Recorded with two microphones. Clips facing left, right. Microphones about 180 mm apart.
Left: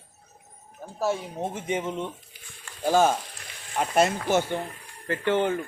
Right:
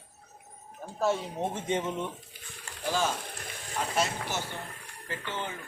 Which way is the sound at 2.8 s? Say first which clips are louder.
Left 9 dB; 50° left (ahead or behind).